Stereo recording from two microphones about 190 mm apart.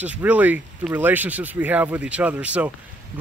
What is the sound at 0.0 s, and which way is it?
Speech, 10° right (ahead or behind).